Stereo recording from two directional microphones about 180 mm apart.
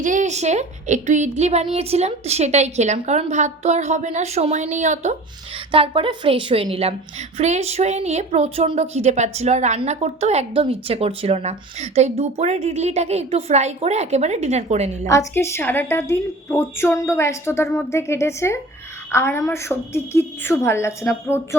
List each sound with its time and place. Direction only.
0.0 s a woman's voice: 45° right (ahead or behind)
5.7 s a woman's voice: 30° right (ahead or behind)
15.0 s a woman's voice: 15° left (ahead or behind)